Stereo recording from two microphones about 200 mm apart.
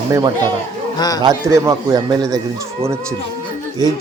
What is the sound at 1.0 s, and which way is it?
Speech, 20° left (ahead or behind).